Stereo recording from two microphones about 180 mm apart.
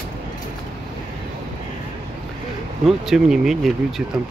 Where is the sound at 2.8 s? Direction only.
Centre (ahead or behind).